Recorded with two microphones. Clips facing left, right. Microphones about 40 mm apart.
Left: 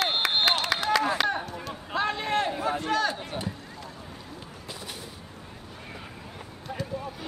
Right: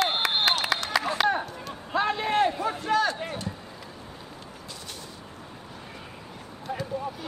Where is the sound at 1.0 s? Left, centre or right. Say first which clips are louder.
Right 1 dB; centre.